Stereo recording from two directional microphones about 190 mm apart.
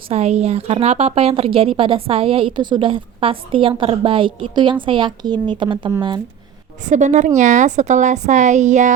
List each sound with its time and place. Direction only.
0.1 s a woman's voice: 35° right (ahead or behind)
6.8 s speech: 40° right (ahead or behind)